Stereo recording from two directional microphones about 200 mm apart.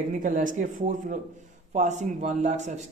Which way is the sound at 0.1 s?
40° right (ahead or behind).